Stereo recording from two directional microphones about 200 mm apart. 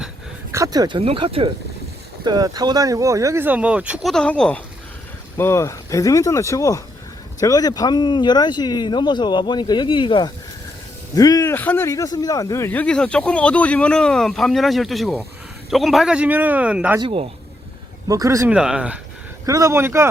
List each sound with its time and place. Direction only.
0.5 s speech: 15° right (ahead or behind)
17.0 s speech: 25° right (ahead or behind)
18.1 s speech: 15° right (ahead or behind)
18.5 s speech: 5° right (ahead or behind)
19.5 s speech: 15° right (ahead or behind)